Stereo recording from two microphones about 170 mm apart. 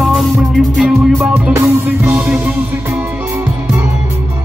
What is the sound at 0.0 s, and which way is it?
Music, centre (ahead or behind).